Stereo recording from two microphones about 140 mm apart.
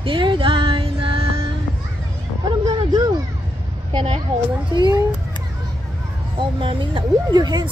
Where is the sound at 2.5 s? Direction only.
30° right (ahead or behind).